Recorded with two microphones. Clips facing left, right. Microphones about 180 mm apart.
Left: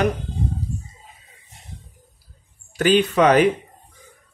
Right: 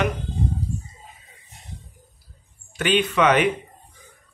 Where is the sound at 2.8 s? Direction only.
35° left (ahead or behind).